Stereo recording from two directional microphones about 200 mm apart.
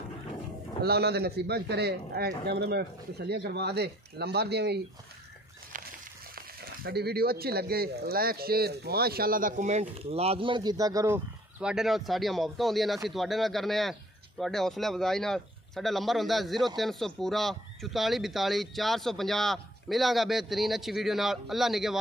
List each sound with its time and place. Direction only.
0.8 s speech: 55° right (ahead or behind)
6.3 s speech: 50° right (ahead or behind); by 11.1 s 15° right (ahead or behind)
11.6 s speech: centre (ahead or behind)